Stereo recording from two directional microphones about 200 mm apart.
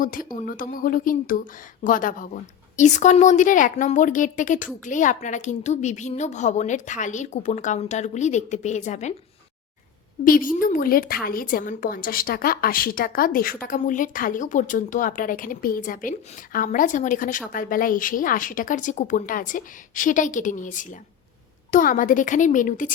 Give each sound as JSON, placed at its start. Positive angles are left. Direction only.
{"t": 0.0, "sound": "a woman's voice", "side_deg": 45}
{"t": 10.2, "sound": "a woman's voice", "side_deg": 45}